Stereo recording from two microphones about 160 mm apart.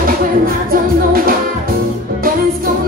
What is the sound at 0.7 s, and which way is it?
Music, 65° right (ahead or behind).